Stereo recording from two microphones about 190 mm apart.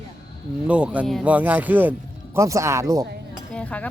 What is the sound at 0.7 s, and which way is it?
Speech, 5° right (ahead or behind).